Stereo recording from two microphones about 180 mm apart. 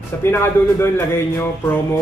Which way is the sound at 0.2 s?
15° left (ahead or behind).